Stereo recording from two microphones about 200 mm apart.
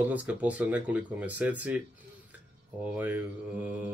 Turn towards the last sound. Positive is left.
turn(degrees=-10)  # may be behind; listen again after turning